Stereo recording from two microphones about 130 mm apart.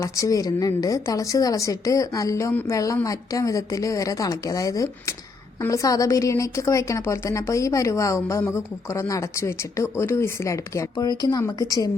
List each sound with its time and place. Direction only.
0.0 s a woman's voice: 25° left (ahead or behind)
2.5 s a woman's voice: 15° left (ahead or behind)
2.7 s a woman's voice: 25° left (ahead or behind)